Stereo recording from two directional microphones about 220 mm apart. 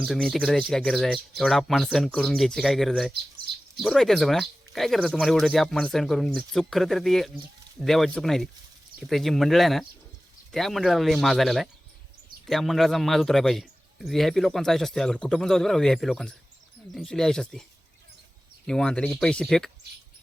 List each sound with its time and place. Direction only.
0.0 s a man's voice: centre (ahead or behind)